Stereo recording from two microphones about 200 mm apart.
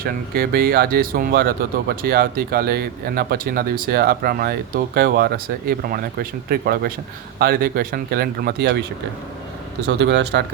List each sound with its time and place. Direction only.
0.0 s speech: 50° right (ahead or behind)
9.8 s speech: 60° right (ahead or behind)